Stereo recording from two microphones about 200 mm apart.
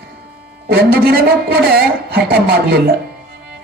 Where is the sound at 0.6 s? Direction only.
50° right (ahead or behind).